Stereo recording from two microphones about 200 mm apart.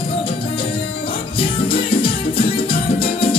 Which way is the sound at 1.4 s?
25° left (ahead or behind).